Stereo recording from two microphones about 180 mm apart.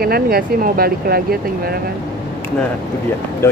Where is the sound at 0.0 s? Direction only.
55° right (ahead or behind).